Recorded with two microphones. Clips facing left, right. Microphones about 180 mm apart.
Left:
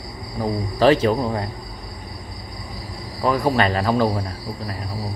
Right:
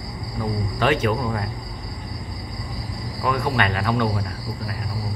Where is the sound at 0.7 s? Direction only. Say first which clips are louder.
Left 5 dB; 35° left (ahead or behind).